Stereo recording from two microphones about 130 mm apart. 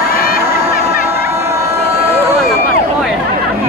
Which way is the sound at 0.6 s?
50° right (ahead or behind).